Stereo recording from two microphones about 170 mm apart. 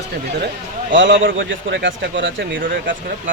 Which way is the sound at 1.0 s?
80° right.